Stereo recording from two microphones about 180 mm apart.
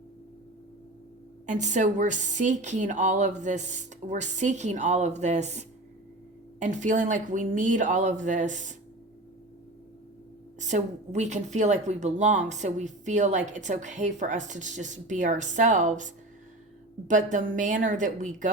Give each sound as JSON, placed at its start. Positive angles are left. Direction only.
{"t": 1.5, "sound": "a woman's voice", "side_deg": -40}
{"t": 10.6, "sound": "speech", "side_deg": -40}